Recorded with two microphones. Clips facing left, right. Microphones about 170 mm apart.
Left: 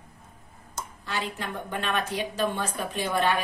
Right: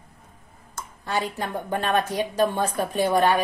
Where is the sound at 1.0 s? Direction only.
40° right (ahead or behind).